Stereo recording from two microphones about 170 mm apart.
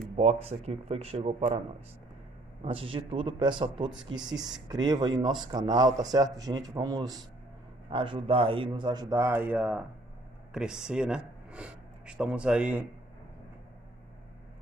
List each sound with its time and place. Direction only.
0.2 s a man's voice: 35° right (ahead or behind)
2.6 s a man's voice: 30° right (ahead or behind)
4.3 s speech: 5° right (ahead or behind)
4.6 s a man's voice: 25° right (ahead or behind)
9.1 s speech: 15° right (ahead or behind)